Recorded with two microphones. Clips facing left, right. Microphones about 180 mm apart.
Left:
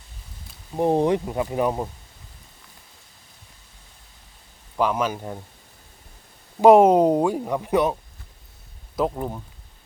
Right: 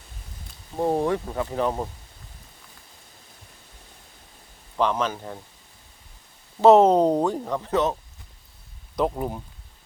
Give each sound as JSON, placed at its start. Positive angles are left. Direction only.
{"t": 0.8, "sound": "speech", "side_deg": 20}
{"t": 4.8, "sound": "speech", "side_deg": 10}
{"t": 6.6, "sound": "speech", "side_deg": 10}
{"t": 9.0, "sound": "speech", "side_deg": -5}